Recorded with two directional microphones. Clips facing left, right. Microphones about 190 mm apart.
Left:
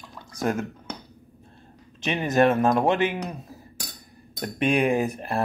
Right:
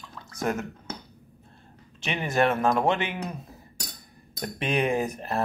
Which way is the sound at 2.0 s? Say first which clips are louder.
Left 4 dB; 20° left (ahead or behind).